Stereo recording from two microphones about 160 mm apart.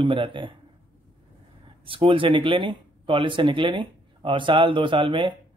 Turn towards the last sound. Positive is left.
turn(degrees=-30)  # may be behind; listen again after turning